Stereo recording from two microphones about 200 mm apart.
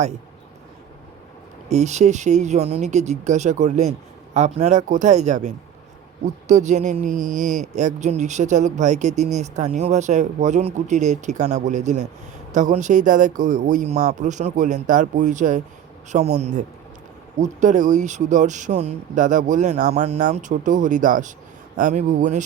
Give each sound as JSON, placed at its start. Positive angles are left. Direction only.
{"t": 1.7, "sound": "speech", "side_deg": -35}